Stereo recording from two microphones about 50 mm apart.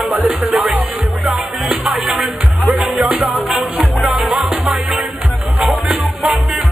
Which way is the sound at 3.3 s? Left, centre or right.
Centre.